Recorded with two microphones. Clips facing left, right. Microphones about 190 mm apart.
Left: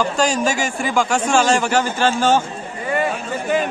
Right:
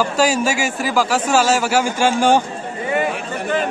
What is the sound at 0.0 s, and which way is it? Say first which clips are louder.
A man's voice: right 1 dB; 5° right (ahead or behind).